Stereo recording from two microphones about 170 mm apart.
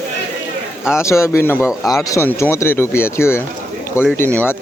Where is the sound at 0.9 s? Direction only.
15° left (ahead or behind).